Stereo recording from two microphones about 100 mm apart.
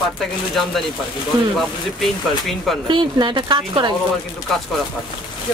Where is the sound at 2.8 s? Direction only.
50° right (ahead or behind).